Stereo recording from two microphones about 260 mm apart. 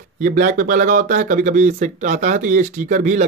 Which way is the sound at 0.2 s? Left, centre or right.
Right.